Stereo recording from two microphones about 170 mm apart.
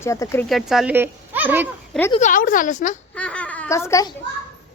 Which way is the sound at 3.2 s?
5° left (ahead or behind).